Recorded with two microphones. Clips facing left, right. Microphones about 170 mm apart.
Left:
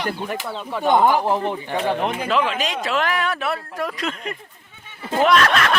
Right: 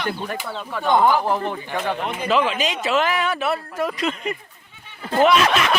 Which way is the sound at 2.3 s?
Centre (ahead or behind).